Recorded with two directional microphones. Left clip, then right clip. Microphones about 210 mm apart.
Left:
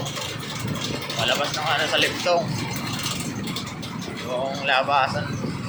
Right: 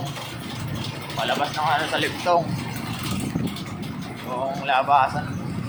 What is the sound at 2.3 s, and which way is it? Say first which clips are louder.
Speech: right 3 dB; 25° right (ahead or behind).